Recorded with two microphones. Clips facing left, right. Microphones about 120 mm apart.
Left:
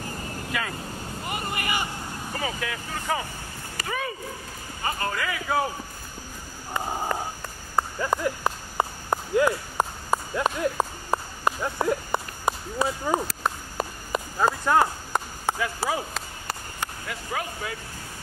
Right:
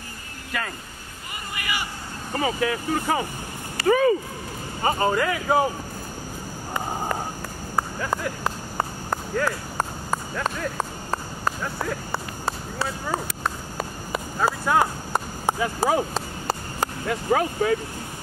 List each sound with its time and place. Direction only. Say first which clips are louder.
0.5 s speech: right 1 dB; centre (ahead or behind)
1.5 s vehicle: right 1 dB; 45° left (ahead or behind)
2.4 s speech: right 9 dB; 30° right (ahead or behind)
3.8 s speech: right 13 dB; 50° right (ahead or behind)
4.8 s speech: right 7 dB; 25° right (ahead or behind)
8.0 s a sound: left 1 dB; 5° left (ahead or behind)
13.4 s a sound: even; centre (ahead or behind)
15.6 s speech: right 6 dB; 25° right (ahead or behind)
16.4 s a sound: right 7 dB; 40° right (ahead or behind)